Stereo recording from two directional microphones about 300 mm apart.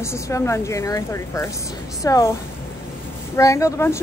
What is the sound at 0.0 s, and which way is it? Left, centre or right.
A woman's voice, centre.